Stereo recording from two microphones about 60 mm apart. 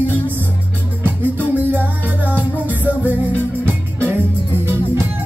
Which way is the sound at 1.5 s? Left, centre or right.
Right.